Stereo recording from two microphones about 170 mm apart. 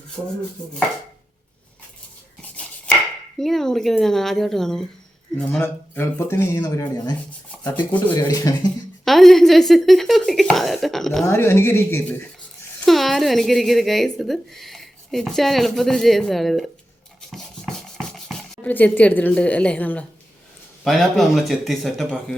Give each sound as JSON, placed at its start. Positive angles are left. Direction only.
{"t": 2.6, "sound": "chopping", "side_deg": 10}
{"t": 3.4, "sound": "speech", "side_deg": 0}
{"t": 7.5, "sound": "a sound", "side_deg": 0}
{"t": 8.1, "sound": "speech", "side_deg": 20}
{"t": 9.0, "sound": "speech", "side_deg": 0}
{"t": 11.3, "sound": "speech", "side_deg": 15}
{"t": 12.8, "sound": "speech", "side_deg": 0}
{"t": 17.3, "sound": "a sound", "side_deg": 5}
{"t": 20.8, "sound": "speech", "side_deg": 0}